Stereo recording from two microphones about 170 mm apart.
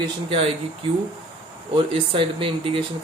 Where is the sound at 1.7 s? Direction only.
30° right (ahead or behind).